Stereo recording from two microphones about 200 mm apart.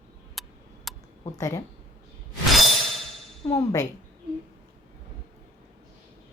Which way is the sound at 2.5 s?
Centre (ahead or behind).